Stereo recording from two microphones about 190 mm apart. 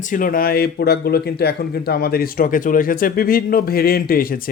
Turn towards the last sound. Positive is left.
turn(degrees=50)  # may be behind; listen again after turning